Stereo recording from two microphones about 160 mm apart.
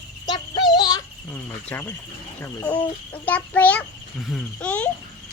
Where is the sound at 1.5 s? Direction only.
10° left (ahead or behind).